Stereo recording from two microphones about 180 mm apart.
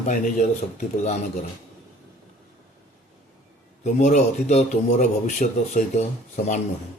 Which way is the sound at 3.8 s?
40° left (ahead or behind).